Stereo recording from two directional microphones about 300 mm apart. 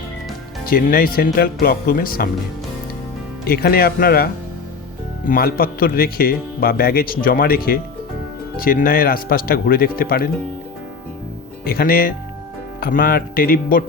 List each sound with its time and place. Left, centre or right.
0.7 s speech: left
3.4 s speech: left
11.6 s speech: left